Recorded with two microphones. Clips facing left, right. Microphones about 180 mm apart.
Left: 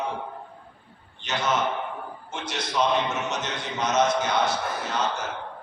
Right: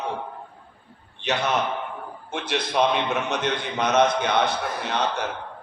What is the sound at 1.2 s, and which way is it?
A man's voice, 65° right (ahead or behind).